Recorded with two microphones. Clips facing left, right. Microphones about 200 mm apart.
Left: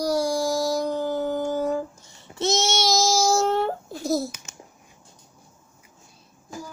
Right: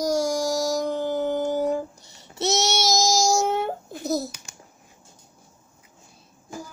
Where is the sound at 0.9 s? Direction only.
20° right (ahead or behind).